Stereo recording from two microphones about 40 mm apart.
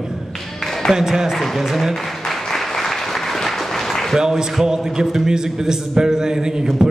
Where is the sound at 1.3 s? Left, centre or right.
Centre.